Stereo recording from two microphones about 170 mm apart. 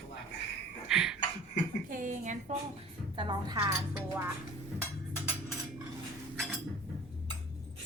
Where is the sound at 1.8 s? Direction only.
50° right (ahead or behind).